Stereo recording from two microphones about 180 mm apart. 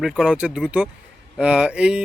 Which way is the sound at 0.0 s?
5° right (ahead or behind).